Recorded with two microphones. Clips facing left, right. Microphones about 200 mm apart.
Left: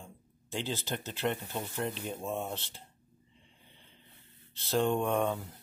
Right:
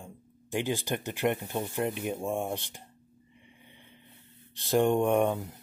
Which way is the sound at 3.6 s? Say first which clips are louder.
Right 5 dB; 60° right (ahead or behind).